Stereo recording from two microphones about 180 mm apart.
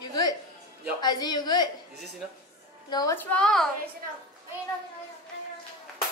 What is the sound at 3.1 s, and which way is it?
Speech, 10° left (ahead or behind).